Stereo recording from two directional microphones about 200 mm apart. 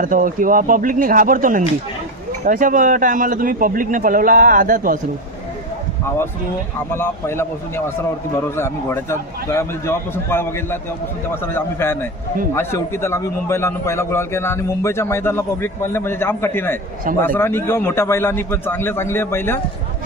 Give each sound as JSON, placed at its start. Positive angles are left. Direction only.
{"t": 0.0, "sound": "speech", "side_deg": -40}
{"t": 6.9, "sound": "a man's voice", "side_deg": 10}